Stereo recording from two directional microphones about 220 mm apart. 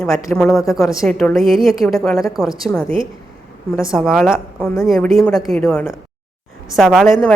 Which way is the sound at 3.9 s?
Centre (ahead or behind).